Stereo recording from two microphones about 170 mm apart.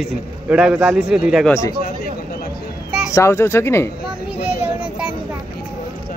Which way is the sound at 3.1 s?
15° left (ahead or behind).